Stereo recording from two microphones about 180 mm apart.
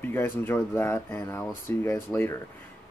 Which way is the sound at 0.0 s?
10° left (ahead or behind).